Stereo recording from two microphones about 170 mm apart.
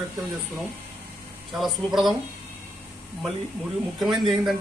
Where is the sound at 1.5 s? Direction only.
Centre (ahead or behind).